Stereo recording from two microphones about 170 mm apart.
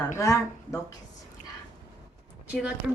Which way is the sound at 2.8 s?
Centre (ahead or behind).